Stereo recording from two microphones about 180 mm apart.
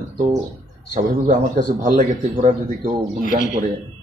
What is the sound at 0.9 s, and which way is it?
Speech, 50° right (ahead or behind).